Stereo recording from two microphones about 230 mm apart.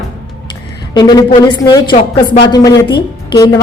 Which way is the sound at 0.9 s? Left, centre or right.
Centre.